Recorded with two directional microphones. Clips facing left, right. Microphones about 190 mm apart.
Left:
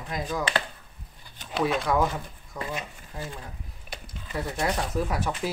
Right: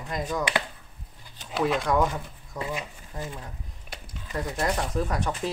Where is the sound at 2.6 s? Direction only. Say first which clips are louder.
Right 1 dB; 20° right (ahead or behind).